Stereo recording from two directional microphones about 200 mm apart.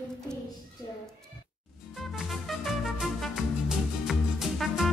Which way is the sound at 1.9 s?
Centre (ahead or behind).